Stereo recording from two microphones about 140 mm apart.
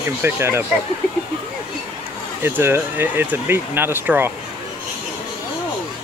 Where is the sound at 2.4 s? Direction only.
15° right (ahead or behind).